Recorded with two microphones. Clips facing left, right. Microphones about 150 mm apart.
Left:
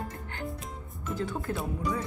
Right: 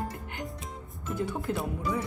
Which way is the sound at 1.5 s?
20° right (ahead or behind).